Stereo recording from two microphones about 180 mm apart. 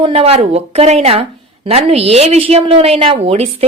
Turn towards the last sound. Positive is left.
turn(degrees=-35)  # may be behind; listen again after turning